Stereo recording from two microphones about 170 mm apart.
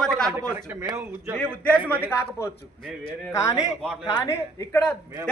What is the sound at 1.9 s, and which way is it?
A man's voice, 10° left (ahead or behind).